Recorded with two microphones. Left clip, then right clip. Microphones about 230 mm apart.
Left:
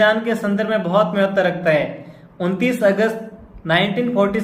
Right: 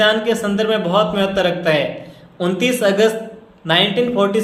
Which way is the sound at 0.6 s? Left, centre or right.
Right.